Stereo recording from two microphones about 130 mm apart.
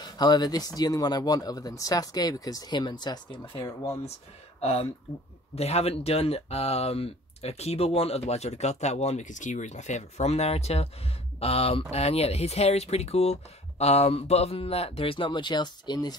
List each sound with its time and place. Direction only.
0.0 s speech: 30° left (ahead or behind)
4.6 s speech: 50° left (ahead or behind); by 16.2 s 35° left (ahead or behind)